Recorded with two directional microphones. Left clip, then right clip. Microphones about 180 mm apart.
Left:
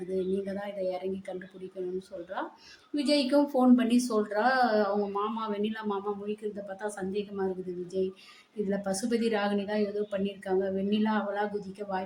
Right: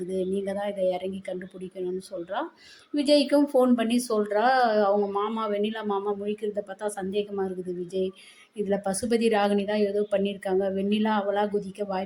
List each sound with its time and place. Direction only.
0.1 s a woman's voice: 20° right (ahead or behind)
2.9 s a woman's voice: 20° right (ahead or behind)